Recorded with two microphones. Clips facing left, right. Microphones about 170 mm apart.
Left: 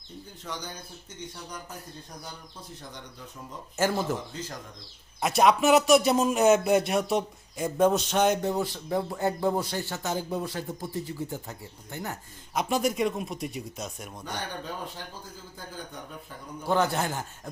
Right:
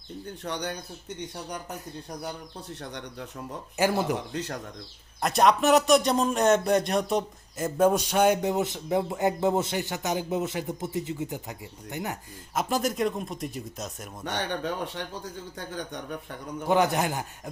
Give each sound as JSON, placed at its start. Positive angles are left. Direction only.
{"t": 0.3, "sound": "speech", "side_deg": -70}
{"t": 2.2, "sound": "speech", "side_deg": -70}
{"t": 3.8, "sound": "speech", "side_deg": -15}
{"t": 4.1, "sound": "speech", "side_deg": -70}
{"t": 5.2, "sound": "speech", "side_deg": 0}
{"t": 12.5, "sound": "speech", "side_deg": 0}
{"t": 14.3, "sound": "speech", "side_deg": -80}
{"t": 16.6, "sound": "speech", "side_deg": -15}